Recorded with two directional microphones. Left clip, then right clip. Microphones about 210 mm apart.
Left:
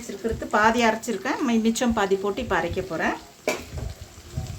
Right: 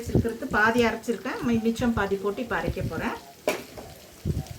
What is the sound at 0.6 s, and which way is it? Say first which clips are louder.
A woman's voice: left 2 dB; 55° left (ahead or behind).